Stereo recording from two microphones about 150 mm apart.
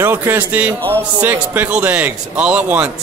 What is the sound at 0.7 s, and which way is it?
Speech, 10° left (ahead or behind).